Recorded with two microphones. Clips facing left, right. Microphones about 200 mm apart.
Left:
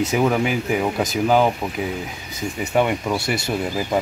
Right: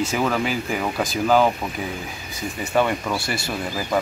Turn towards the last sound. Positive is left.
turn(degrees=20)  # may be behind; listen again after turning